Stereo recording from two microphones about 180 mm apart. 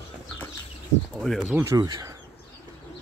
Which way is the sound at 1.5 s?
15° right (ahead or behind).